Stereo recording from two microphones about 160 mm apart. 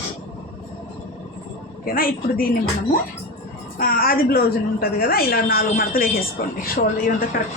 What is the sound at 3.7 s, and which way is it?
A woman's voice, 70° left (ahead or behind).